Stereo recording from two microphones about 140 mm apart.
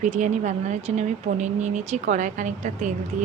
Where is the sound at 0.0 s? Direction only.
60° right (ahead or behind).